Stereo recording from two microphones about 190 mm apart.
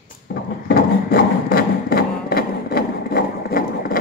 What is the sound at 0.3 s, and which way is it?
Wood, 55° left (ahead or behind).